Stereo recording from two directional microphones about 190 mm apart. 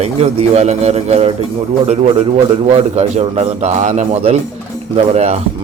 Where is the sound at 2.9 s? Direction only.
35° right (ahead or behind).